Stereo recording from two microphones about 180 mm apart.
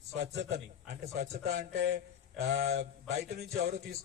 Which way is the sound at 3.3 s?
60° right (ahead or behind).